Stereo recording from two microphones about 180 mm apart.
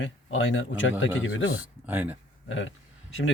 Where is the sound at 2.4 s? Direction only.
90° left.